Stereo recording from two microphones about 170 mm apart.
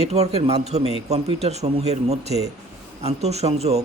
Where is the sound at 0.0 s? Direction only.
40° right (ahead or behind).